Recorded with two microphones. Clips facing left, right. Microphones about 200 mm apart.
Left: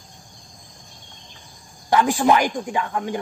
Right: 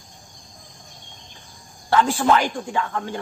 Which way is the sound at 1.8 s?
15° left (ahead or behind).